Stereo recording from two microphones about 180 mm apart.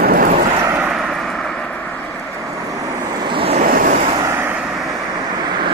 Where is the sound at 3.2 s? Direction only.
25° right (ahead or behind).